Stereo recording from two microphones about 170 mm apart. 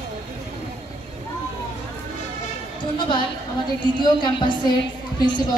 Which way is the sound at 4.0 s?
25° left (ahead or behind).